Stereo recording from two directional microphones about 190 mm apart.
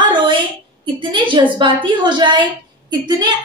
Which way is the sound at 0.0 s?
25° right (ahead or behind).